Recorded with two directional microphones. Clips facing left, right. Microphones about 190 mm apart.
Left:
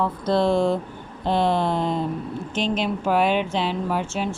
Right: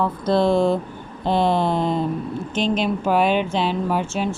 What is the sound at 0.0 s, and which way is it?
Speech, 10° right (ahead or behind).